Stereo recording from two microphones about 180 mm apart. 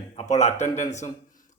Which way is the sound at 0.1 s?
40° left (ahead or behind).